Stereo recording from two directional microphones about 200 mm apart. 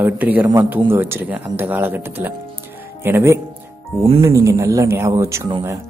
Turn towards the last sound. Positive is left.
turn(degrees=-15)  # may be behind; listen again after turning